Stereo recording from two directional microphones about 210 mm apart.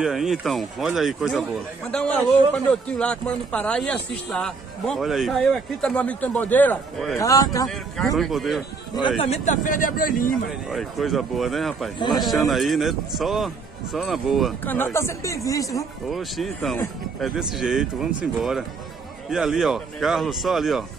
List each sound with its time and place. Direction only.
0.0 s a man's voice: centre (ahead or behind)
7.2 s speech: 15° left (ahead or behind)
7.6 s a man's voice: centre (ahead or behind)
9.2 s speech: 30° left (ahead or behind)
10.7 s a man's voice: centre (ahead or behind)
14.6 s speech: 10° left (ahead or behind)
16.1 s a man's voice: centre (ahead or behind)